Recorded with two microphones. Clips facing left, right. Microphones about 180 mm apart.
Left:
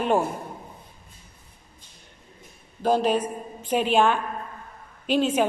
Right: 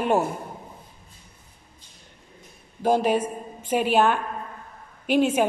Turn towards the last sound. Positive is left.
turn(degrees=-10)  # may be behind; listen again after turning